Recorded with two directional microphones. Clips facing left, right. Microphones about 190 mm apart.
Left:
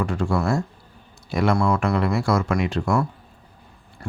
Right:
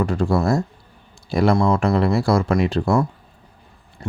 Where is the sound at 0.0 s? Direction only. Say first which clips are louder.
Right 4 dB; 35° right (ahead or behind).